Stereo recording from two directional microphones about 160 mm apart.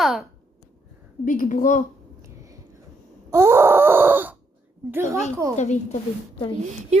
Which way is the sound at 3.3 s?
15° right (ahead or behind).